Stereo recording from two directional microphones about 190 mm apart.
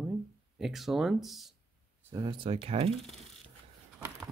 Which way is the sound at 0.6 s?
Centre (ahead or behind).